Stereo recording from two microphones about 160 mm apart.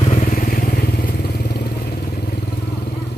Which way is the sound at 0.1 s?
60° left (ahead or behind).